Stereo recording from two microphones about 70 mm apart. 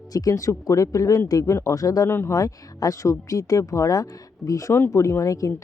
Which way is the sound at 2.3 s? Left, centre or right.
Left.